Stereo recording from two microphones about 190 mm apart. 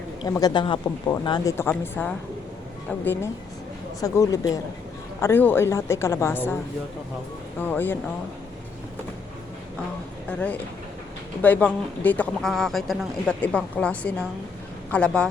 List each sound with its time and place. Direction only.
0.2 s speech: 20° left (ahead or behind)
7.6 s speech: 10° left (ahead or behind)
10.2 s speech: 5° left (ahead or behind)